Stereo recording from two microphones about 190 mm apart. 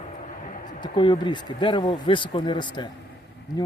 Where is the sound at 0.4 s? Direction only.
45° left (ahead or behind).